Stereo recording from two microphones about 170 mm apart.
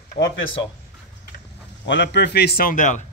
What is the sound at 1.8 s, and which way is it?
A man's voice, 90° left.